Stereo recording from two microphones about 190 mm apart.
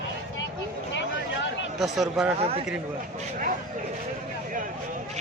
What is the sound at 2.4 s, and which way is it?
Speech, 30° right (ahead or behind).